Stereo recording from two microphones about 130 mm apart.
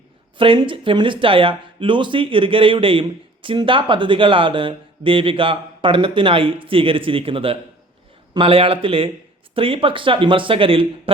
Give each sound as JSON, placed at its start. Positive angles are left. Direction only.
{"t": 0.3, "sound": "speech", "side_deg": -40}